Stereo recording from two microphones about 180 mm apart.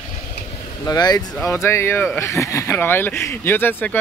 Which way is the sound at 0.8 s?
20° left (ahead or behind).